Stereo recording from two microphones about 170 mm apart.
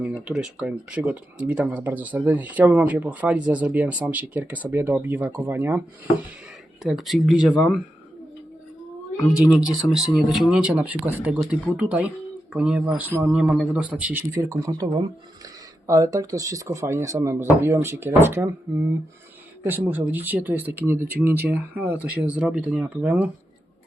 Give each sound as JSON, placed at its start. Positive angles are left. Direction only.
{"t": 0.3, "sound": "speech", "side_deg": -5}
{"t": 6.8, "sound": "speech", "side_deg": 0}
{"t": 9.6, "sound": "speech", "side_deg": -5}